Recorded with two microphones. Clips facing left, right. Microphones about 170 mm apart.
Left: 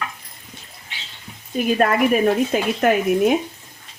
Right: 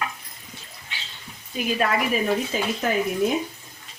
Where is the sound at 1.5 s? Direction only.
50° left (ahead or behind); by 3.3 s 65° left (ahead or behind).